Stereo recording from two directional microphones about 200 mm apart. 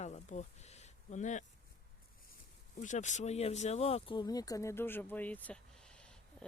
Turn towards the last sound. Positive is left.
turn(degrees=5)  # may be behind; listen again after turning